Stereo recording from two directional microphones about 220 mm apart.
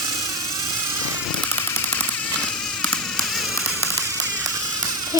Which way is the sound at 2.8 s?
5° left (ahead or behind).